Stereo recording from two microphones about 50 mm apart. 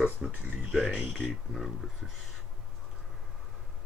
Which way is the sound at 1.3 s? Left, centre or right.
Centre.